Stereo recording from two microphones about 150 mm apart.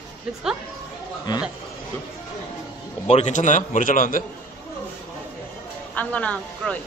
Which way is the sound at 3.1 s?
55° left (ahead or behind).